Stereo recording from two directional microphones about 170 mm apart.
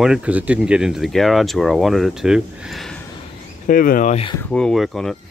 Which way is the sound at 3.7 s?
55° left (ahead or behind).